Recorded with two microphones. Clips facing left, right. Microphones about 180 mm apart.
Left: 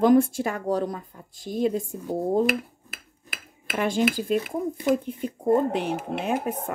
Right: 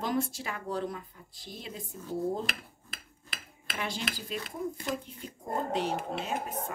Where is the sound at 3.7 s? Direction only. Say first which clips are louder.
Left 13 dB; 50° left (ahead or behind).